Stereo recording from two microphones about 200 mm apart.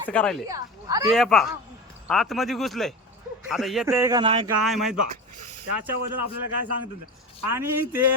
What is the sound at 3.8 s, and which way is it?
Speech, 15° right (ahead or behind).